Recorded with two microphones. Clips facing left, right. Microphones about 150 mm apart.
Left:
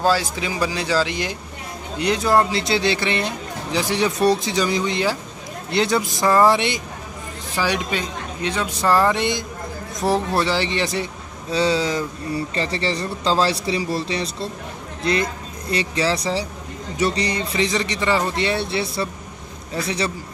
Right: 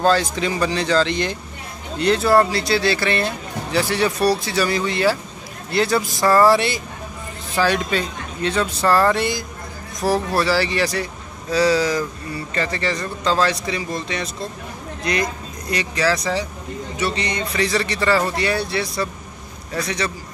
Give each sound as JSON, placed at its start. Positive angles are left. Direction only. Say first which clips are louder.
{"t": 0.0, "sound": "speech", "louder": "right 2 dB", "side_deg": 10}
{"t": 15.7, "sound": "speech", "louder": "right 1 dB", "side_deg": 30}